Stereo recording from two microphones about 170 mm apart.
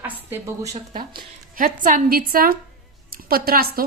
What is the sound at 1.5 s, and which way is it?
A woman's voice, 55° right (ahead or behind).